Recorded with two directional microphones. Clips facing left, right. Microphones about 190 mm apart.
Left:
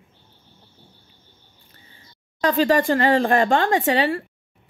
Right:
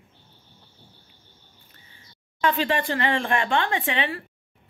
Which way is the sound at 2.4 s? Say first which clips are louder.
Left 5 dB; 40° left (ahead or behind).